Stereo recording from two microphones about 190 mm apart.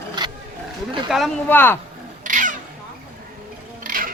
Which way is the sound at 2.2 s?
45° right (ahead or behind).